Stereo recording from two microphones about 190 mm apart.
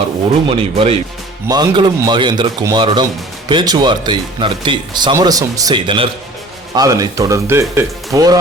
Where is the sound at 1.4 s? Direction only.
20° right (ahead or behind).